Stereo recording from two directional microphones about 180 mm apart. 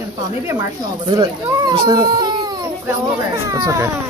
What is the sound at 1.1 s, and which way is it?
Speech, 25° right (ahead or behind).